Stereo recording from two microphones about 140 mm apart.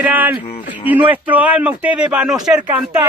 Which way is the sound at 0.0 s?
10° right (ahead or behind).